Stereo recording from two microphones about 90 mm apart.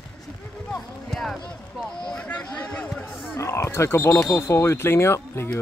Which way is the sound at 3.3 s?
30° left (ahead or behind).